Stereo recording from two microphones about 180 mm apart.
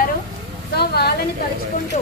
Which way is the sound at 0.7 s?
65° left (ahead or behind).